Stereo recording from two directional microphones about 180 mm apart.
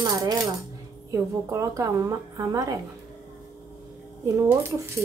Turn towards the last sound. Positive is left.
turn(degrees=-15)  # may be behind; listen again after turning